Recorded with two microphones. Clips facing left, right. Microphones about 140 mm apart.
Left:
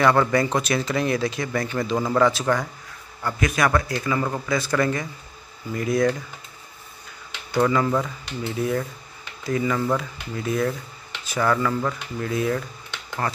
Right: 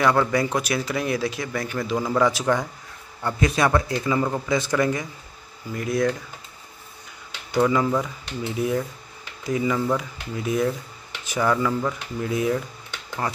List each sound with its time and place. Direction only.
0.0 s speech: 5° right (ahead or behind)
3.2 s a man's voice: 25° right (ahead or behind)
5.7 s speech: centre (ahead or behind)
7.5 s speech: 10° right (ahead or behind)